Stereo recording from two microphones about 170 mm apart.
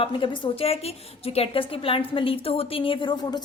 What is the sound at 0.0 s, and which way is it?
A woman's voice, 30° left (ahead or behind).